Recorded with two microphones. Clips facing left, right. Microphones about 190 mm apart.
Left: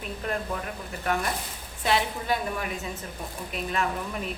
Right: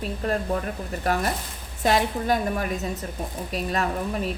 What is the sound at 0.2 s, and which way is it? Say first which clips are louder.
A woman's voice: right 5 dB; 35° right (ahead or behind).